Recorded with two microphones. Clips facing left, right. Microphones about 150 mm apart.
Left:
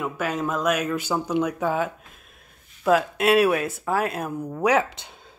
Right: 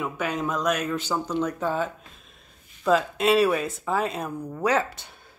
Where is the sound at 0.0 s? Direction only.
Centre (ahead or behind).